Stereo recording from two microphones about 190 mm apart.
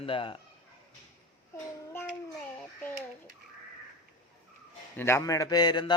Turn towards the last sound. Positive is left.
turn(degrees=25)  # may be behind; listen again after turning